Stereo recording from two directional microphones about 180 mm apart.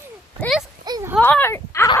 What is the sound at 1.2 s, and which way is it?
Speech, 10° left (ahead or behind).